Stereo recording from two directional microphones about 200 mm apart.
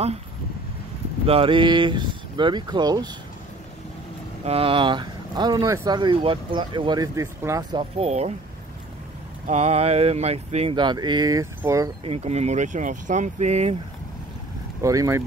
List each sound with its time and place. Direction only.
1.2 s speech: 30° right (ahead or behind)
4.5 s speech: 30° right (ahead or behind)
8.0 s speech: 30° right (ahead or behind)
9.5 s speech: 30° right (ahead or behind); by 11.9 s 15° right (ahead or behind)
12.0 s speech: 30° right (ahead or behind)
14.8 s speech: 15° right (ahead or behind)